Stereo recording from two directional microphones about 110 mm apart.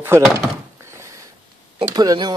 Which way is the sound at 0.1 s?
25° right (ahead or behind).